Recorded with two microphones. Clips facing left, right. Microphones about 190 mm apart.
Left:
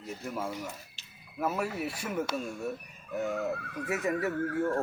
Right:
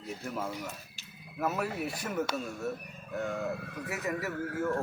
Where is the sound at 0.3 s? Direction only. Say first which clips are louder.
Left 1 dB; 10° left (ahead or behind).